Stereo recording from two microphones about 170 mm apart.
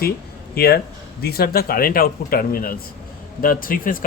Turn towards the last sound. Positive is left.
turn(degrees=55)  # may be behind; listen again after turning